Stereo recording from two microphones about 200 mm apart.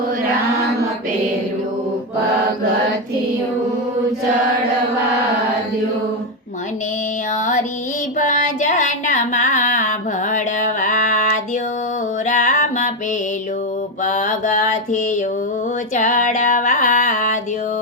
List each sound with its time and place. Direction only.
8.2 s a sound: 40° left (ahead or behind)
12.2 s music: 40° left (ahead or behind)
14.0 s mantra: 40° left (ahead or behind)
16.0 s music: 40° left (ahead or behind)